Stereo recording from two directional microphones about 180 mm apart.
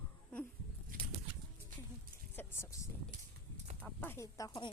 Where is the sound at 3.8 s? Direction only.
10° left (ahead or behind).